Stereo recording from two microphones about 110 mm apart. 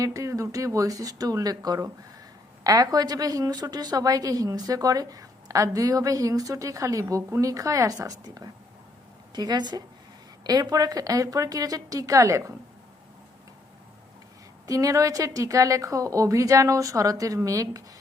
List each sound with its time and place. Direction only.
0.0 s a woman's voice: 30° right (ahead or behind)
14.7 s a woman's voice: 30° right (ahead or behind)